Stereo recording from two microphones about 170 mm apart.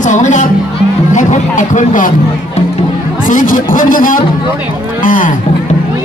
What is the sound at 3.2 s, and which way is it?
Speech, 50° left (ahead or behind).